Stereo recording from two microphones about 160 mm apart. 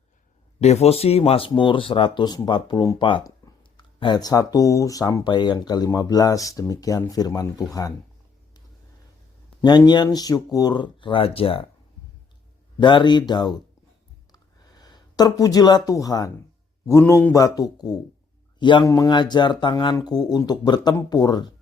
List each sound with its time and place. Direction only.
0.6 s speech: 40° left (ahead or behind); by 7.9 s 20° left (ahead or behind)
9.6 s speech: 25° left (ahead or behind)
12.8 s speech: 30° left (ahead or behind)
14.3 s a sound: 25° left (ahead or behind)
16.8 s speech: 20° left (ahead or behind)